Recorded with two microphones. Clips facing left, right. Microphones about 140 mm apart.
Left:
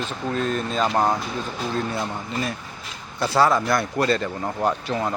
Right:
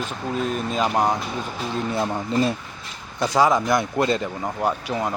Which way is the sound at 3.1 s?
15° right (ahead or behind).